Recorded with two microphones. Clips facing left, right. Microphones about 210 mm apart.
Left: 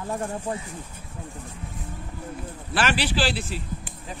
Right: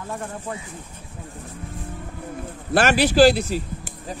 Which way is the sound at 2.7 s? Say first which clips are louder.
Right 7 dB; 45° right (ahead or behind).